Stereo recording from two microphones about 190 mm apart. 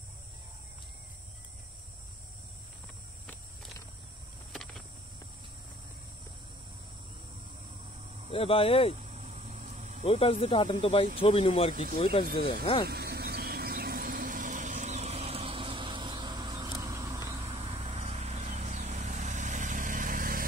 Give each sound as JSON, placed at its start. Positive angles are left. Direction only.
{"t": 4.5, "sound": "a sound", "side_deg": 0}
{"t": 8.3, "sound": "speech", "side_deg": 30}
{"t": 9.0, "sound": "a sound", "side_deg": -35}
{"t": 10.0, "sound": "speech", "side_deg": 30}
{"t": 12.8, "sound": "vehicle", "side_deg": -55}
{"t": 17.4, "sound": "vehicle", "side_deg": -35}